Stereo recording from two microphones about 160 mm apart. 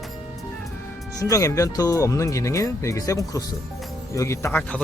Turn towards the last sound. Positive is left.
turn(degrees=5)  # may be behind; listen again after turning